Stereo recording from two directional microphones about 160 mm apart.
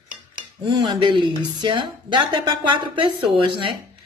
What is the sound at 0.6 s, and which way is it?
Speech, 30° right (ahead or behind).